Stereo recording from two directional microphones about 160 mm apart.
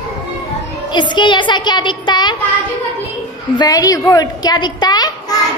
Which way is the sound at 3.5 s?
20° left (ahead or behind).